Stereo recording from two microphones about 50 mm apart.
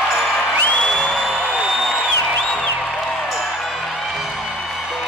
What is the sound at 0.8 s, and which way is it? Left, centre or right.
Music, centre.